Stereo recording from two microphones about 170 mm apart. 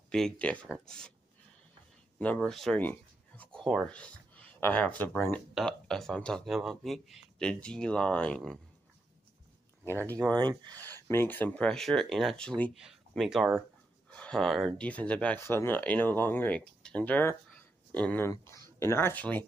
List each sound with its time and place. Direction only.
0.1 s speech: 5° left (ahead or behind)
2.1 s speech: 5° left (ahead or behind)
10.1 s speech: 25° right (ahead or behind)
10.9 s speech: 15° left (ahead or behind)